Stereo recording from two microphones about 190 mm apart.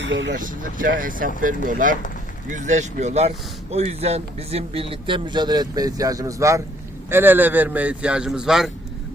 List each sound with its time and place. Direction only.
0.0 s speech: 75° right (ahead or behind)
0.3 s speech: 45° right (ahead or behind); by 8.7 s centre (ahead or behind)